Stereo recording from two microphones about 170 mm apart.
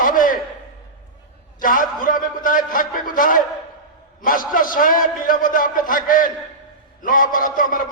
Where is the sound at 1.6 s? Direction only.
55° left (ahead or behind).